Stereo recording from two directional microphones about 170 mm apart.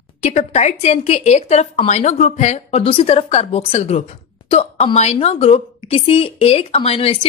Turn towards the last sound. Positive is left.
turn(degrees=30)  # may be behind; listen again after turning